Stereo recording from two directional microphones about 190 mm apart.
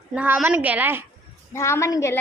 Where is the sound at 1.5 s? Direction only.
15° left (ahead or behind).